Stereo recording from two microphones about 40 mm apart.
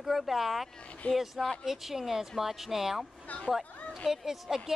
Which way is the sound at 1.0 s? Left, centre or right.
Left.